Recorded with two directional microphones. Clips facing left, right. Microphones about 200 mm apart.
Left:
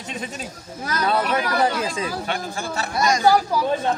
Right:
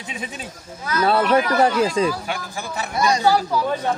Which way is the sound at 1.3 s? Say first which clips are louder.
Right 4 dB; 40° right (ahead or behind).